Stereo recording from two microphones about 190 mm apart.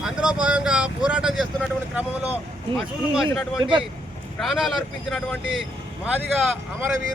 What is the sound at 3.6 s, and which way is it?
Speech, 25° right (ahead or behind).